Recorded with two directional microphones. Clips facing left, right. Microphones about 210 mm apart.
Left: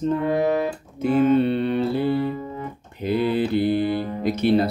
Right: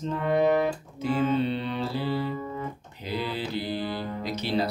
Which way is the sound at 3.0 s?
55° left (ahead or behind).